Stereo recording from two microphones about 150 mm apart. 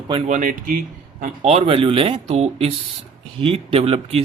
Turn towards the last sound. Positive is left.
turn(degrees=-40)  # may be behind; listen again after turning